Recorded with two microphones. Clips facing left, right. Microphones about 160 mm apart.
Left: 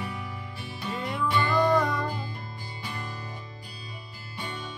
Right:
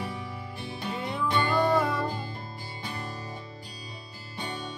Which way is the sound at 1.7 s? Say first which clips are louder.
Left 1 dB; 5° right (ahead or behind).